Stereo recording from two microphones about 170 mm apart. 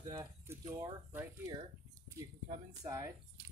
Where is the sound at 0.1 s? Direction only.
20° right (ahead or behind).